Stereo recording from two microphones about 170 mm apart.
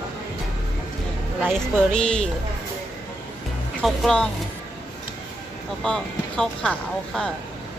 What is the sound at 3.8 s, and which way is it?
Speech, centre (ahead or behind).